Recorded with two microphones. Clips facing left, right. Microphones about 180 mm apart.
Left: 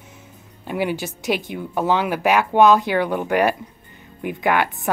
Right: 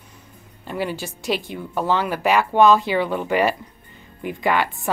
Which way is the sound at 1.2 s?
20° left (ahead or behind).